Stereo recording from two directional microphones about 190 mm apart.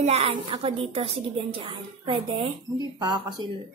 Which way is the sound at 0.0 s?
35° right (ahead or behind).